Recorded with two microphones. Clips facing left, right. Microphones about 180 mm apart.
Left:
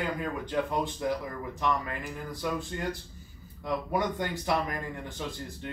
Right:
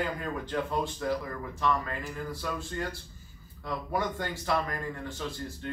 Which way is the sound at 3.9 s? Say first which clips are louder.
Even; 15° left (ahead or behind).